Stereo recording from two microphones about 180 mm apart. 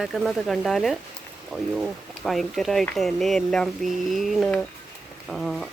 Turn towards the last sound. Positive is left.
turn(degrees=0)  # may be behind; listen again after turning